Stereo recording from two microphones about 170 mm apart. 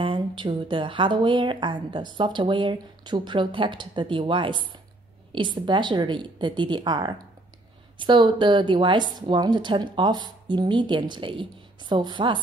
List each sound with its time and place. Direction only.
0.0 s a woman's voice: 30° right (ahead or behind)